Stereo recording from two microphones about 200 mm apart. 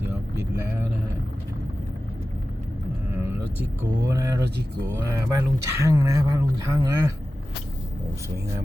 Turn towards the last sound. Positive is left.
turn(degrees=-20)  # may be behind; listen again after turning